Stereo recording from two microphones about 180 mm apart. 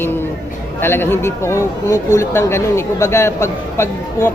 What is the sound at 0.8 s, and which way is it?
Speech, 10° left (ahead or behind).